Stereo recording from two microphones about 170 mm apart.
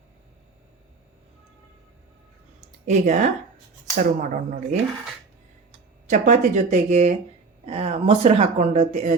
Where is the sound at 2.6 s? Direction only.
45° right (ahead or behind).